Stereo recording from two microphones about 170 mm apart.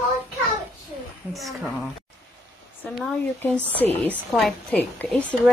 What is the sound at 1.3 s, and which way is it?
Speech, centre (ahead or behind).